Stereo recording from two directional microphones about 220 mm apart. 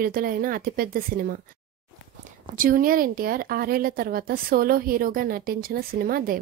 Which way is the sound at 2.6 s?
40° right (ahead or behind).